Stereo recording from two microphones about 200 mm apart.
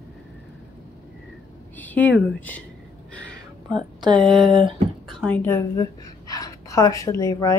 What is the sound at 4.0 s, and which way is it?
Speech, 20° right (ahead or behind).